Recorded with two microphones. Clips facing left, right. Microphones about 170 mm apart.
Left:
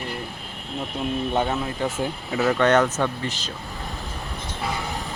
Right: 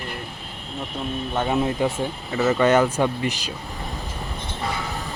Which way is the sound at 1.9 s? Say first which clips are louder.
Even; 5° left (ahead or behind).